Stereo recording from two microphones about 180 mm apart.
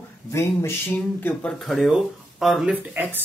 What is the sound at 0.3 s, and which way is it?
Speech, 15° left (ahead or behind).